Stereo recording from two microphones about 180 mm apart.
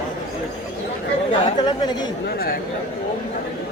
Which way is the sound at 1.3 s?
30° left (ahead or behind).